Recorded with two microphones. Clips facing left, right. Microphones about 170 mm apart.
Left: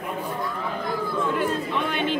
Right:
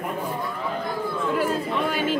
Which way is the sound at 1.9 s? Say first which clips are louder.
Even; 5° right (ahead or behind).